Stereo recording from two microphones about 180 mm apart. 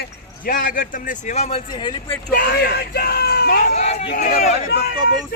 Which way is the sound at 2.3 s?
60° left (ahead or behind).